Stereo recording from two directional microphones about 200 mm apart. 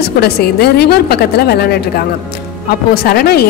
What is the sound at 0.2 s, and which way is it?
A woman's voice, 55° left (ahead or behind).